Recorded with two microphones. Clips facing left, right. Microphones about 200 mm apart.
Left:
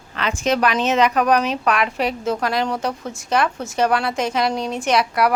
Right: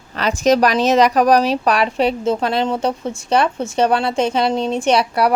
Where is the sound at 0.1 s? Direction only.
40° right (ahead or behind).